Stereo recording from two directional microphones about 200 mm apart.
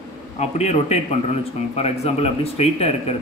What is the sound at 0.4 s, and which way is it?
Speech, 35° left (ahead or behind).